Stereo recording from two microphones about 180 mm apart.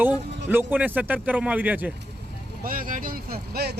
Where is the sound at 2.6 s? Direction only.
50° right (ahead or behind).